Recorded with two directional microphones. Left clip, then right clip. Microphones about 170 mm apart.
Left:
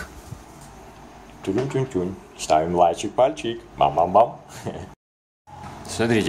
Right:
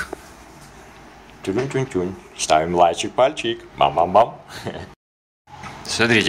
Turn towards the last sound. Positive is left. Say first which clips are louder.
# right 5 dB
turn(degrees=10)  # may be behind; listen again after turning